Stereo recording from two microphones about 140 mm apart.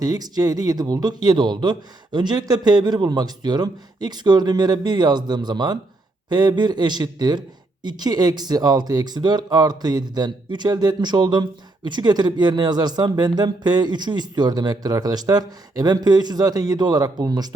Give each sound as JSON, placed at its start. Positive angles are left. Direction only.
{"t": 0.0, "sound": "a man's voice", "side_deg": -25}